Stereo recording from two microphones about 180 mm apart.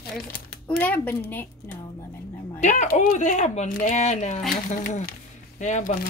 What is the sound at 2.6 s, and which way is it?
Speech, 45° left (ahead or behind).